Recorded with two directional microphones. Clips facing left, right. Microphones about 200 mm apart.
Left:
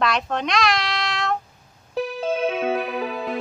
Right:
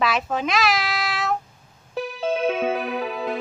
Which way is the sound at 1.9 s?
Centre (ahead or behind).